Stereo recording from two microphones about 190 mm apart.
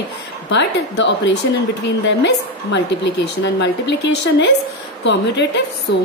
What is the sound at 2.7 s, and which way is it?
Speech, 70° left (ahead or behind).